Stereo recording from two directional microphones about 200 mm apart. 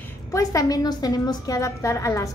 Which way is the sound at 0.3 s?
15° left (ahead or behind).